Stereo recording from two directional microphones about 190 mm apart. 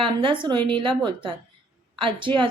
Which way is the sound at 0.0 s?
25° right (ahead or behind).